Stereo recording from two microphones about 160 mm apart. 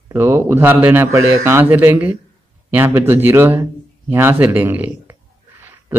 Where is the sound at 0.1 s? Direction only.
15° right (ahead or behind).